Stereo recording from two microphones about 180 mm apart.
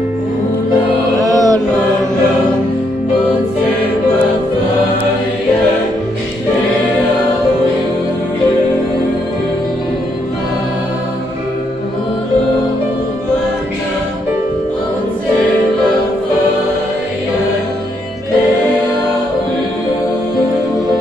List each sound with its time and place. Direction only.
1.3 s music: 20° right (ahead or behind)